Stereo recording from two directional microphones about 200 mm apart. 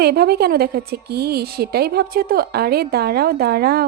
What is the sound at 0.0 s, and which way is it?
A woman's voice, 50° right (ahead or behind).